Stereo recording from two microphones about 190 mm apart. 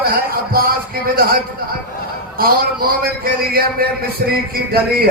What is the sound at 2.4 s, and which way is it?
Speech, 50° right (ahead or behind).